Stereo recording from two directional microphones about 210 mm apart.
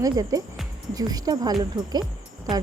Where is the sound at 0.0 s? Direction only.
15° right (ahead or behind).